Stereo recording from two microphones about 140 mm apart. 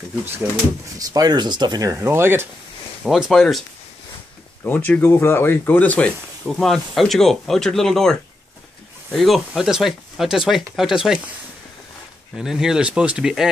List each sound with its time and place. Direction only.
0.9 s speech: 25° right (ahead or behind)
3.0 s speech: centre (ahead or behind)
4.6 s speech: 10° left (ahead or behind); by 11.2 s 5° right (ahead or behind)
12.4 s speech: 5° right (ahead or behind)